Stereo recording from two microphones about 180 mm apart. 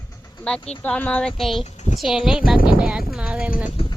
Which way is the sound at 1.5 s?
40° left (ahead or behind).